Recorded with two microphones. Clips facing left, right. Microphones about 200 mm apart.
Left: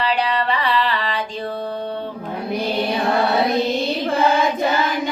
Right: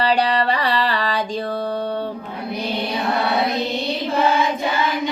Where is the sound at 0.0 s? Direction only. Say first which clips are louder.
Right 2 dB; 40° right (ahead or behind).